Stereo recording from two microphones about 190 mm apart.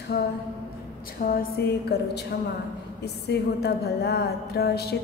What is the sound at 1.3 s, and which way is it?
A woman's voice, 55° left (ahead or behind).